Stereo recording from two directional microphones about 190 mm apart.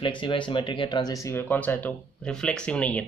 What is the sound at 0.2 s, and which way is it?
Speech, 25° left (ahead or behind).